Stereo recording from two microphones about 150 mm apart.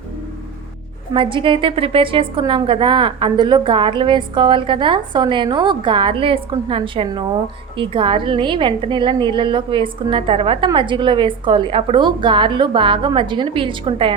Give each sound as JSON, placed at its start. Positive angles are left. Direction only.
{"t": 1.1, "sound": "a woman's voice", "side_deg": -35}